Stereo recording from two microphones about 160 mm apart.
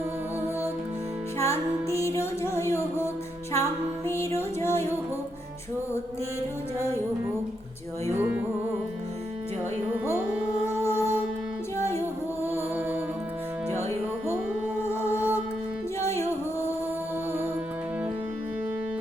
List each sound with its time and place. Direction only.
1.4 s music: 15° left (ahead or behind)
8.1 s music: 15° right (ahead or behind)
9.9 s carnatic music: 10° right (ahead or behind)
11.8 s music: 15° left (ahead or behind)
14.8 s music: 15° left (ahead or behind)